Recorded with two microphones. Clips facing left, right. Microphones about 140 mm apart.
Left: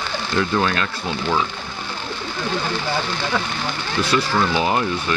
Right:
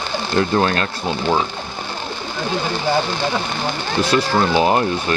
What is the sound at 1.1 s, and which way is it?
Speech, 25° right (ahead or behind).